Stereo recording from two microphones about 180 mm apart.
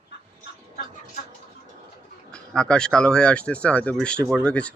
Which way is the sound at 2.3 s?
5° left (ahead or behind).